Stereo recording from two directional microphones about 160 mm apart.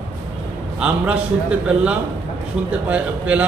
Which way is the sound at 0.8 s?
5° right (ahead or behind).